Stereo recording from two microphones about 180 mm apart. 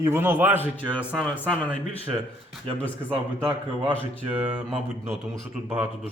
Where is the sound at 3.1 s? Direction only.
30° right (ahead or behind).